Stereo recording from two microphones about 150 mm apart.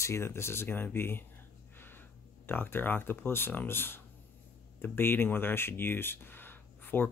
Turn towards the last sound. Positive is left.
turn(degrees=15)  # may be behind; listen again after turning